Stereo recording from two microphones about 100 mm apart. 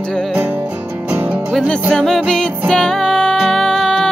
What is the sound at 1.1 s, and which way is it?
Music, 15° right (ahead or behind).